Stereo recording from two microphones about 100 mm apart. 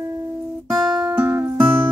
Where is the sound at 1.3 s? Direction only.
25° right (ahead or behind).